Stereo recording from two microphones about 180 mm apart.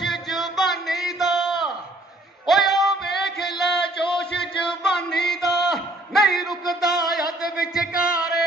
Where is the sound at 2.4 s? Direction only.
Centre (ahead or behind).